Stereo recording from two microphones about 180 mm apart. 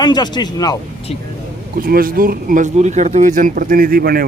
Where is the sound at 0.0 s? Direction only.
25° left (ahead or behind).